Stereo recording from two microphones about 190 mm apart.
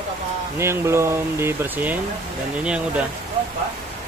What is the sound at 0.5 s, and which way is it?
Speech, 15° right (ahead or behind).